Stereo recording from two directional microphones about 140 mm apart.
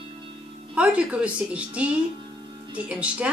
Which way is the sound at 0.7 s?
10° right (ahead or behind).